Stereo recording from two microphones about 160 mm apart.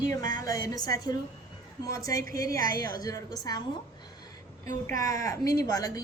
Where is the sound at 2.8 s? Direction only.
20° left (ahead or behind).